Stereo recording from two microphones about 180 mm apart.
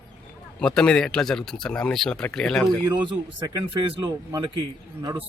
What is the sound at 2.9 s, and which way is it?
Speech, 25° right (ahead or behind).